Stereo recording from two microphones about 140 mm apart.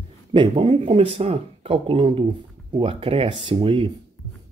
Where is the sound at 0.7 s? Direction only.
40° right (ahead or behind).